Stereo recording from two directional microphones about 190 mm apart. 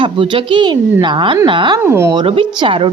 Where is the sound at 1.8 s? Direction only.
15° right (ahead or behind).